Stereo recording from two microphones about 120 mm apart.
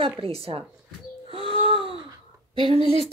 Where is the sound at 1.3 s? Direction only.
50° right (ahead or behind).